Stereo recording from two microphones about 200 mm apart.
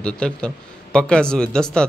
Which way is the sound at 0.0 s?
5° left (ahead or behind).